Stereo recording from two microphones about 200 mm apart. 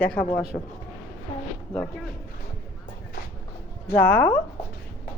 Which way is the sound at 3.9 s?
10° left (ahead or behind).